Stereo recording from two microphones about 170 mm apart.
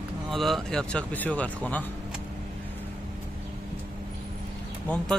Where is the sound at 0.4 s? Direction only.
Centre (ahead or behind).